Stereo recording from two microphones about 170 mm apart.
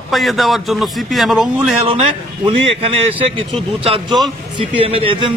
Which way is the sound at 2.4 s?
35° right (ahead or behind).